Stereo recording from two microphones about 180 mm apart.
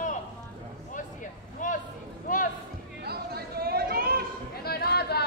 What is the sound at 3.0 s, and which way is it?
Chatter, 60° right (ahead or behind).